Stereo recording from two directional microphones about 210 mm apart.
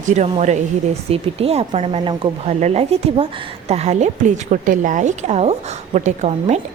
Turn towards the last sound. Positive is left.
turn(degrees=-30)  # may be behind; listen again after turning